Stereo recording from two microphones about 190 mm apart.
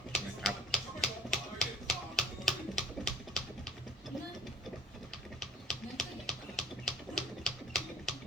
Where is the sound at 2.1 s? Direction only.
Centre (ahead or behind).